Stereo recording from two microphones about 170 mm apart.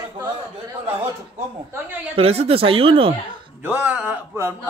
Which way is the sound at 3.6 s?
10° right (ahead or behind).